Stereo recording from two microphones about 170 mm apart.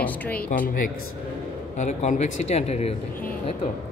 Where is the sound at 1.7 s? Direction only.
45° left (ahead or behind).